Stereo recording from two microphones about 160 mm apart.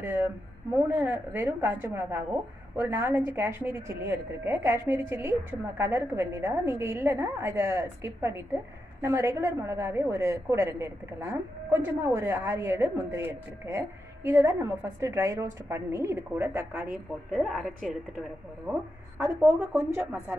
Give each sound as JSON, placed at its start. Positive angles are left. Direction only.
{"t": 0.0, "sound": "a woman's voice", "side_deg": -15}
{"t": 17.3, "sound": "speech", "side_deg": 0}
{"t": 19.2, "sound": "a woman's voice", "side_deg": -15}